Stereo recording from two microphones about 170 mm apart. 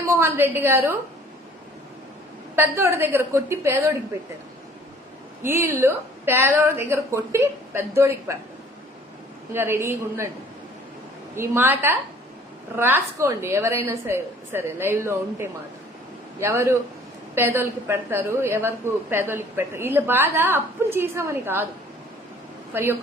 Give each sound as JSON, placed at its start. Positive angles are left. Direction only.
{"t": 0.2, "sound": "a woman's voice", "side_deg": -15}
{"t": 2.6, "sound": "a woman's voice", "side_deg": -15}
{"t": 5.4, "sound": "a woman's voice", "side_deg": -15}
{"t": 9.5, "sound": "a woman's voice", "side_deg": -15}
{"t": 11.3, "sound": "a woman's voice", "side_deg": -15}
{"t": 22.7, "sound": "a woman's voice", "side_deg": -10}